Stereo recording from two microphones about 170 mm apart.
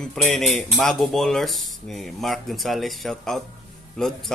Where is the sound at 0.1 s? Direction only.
5° left (ahead or behind).